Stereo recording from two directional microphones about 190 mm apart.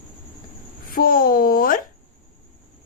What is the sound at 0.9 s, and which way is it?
Babbling, 50° left (ahead or behind).